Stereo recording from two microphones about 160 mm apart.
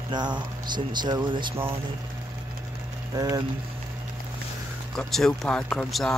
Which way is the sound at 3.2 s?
25° right (ahead or behind).